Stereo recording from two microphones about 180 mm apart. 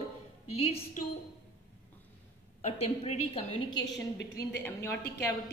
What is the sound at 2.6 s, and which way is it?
Speech, 35° left (ahead or behind).